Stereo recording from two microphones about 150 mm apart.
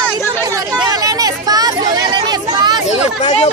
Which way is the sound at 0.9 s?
25° right (ahead or behind).